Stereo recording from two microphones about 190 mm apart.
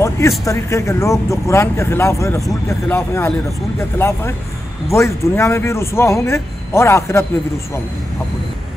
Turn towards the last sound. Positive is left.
turn(degrees=15)  # may be behind; listen again after turning